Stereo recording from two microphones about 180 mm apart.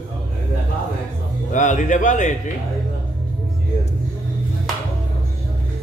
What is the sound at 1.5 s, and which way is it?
Speech, 45° left (ahead or behind).